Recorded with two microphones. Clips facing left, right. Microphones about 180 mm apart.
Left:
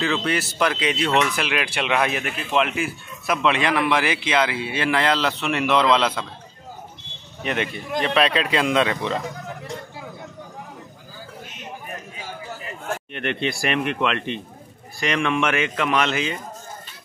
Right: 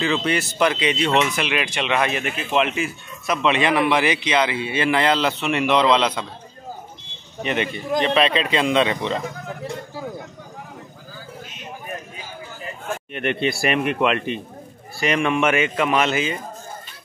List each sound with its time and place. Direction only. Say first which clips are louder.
0.0 s speech: right 2 dB; centre (ahead or behind)
7.4 s speech: right 2 dB; centre (ahead or behind)
13.1 s speech: right 4 dB; 5° right (ahead or behind)